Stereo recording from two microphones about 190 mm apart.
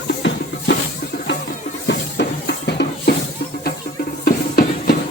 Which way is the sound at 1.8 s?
60° left (ahead or behind).